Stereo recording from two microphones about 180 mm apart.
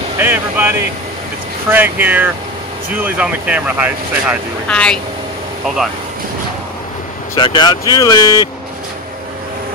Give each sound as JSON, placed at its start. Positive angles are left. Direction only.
{"t": 0.2, "sound": "speech", "side_deg": -10}
{"t": 4.6, "sound": "speech", "side_deg": 5}
{"t": 7.3, "sound": "speech", "side_deg": 25}